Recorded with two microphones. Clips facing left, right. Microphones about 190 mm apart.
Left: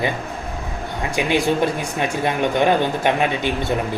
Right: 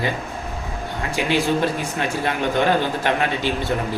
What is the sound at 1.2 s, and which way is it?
A man's voice, 15° left (ahead or behind).